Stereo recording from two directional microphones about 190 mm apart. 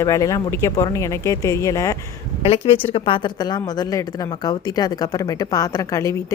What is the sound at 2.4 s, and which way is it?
A woman's voice, 30° left (ahead or behind).